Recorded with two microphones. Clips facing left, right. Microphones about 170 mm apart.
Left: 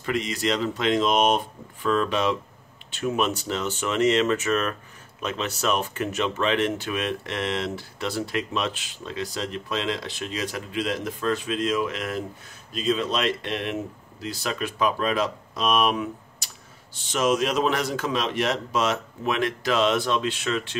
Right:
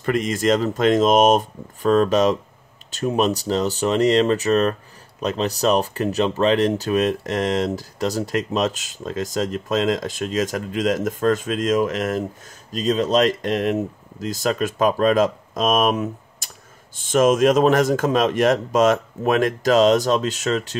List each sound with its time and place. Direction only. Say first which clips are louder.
0.0 s speech: right 6 dB; 50° right (ahead or behind)